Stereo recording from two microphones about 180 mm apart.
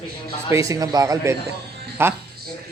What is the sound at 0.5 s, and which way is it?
A man's voice, 20° right (ahead or behind).